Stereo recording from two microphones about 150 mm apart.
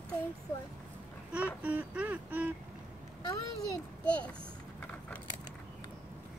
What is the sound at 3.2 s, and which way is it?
Speech, 25° left (ahead or behind).